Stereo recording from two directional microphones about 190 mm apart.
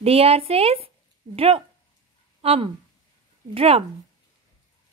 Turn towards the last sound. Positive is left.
turn(degrees=-30)  # may be behind; listen again after turning